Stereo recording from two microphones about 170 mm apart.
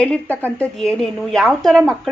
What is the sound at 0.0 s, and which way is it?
A woman's voice, 10° left (ahead or behind).